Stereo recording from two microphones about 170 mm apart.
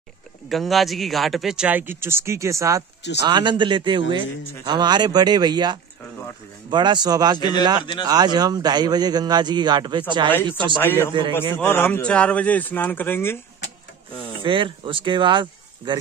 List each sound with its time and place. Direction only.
0.5 s a man's voice: centre (ahead or behind); by 7.3 s 25° right (ahead or behind)
7.3 s speech: 25° left (ahead or behind)
8.1 s a man's voice: 25° right (ahead or behind)
10.3 s speech: 10° left (ahead or behind)
14.4 s speech: 30° right (ahead or behind)